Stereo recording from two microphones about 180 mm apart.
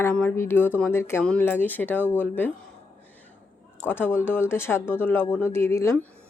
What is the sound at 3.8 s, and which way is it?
Speech, 10° left (ahead or behind).